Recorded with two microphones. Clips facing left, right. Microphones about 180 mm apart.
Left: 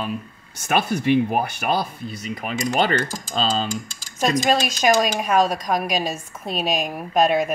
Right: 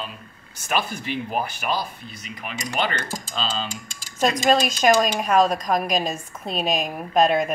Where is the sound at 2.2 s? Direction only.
40° left (ahead or behind).